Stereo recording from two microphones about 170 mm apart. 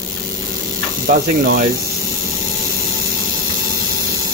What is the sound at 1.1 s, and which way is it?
Speech, 50° right (ahead or behind).